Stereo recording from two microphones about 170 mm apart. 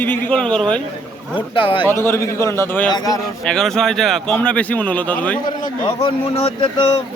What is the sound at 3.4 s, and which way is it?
Speech, 5° left (ahead or behind).